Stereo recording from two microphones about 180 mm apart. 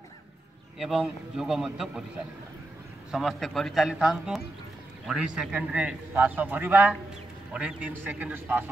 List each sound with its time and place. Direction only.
0.7 s a man's voice: centre (ahead or behind)
3.1 s a man's voice: centre (ahead or behind)